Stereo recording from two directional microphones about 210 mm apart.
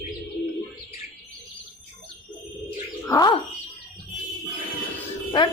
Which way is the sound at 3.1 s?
20° left (ahead or behind).